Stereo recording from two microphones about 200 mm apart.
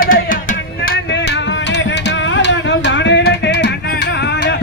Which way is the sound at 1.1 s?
60° left (ahead or behind).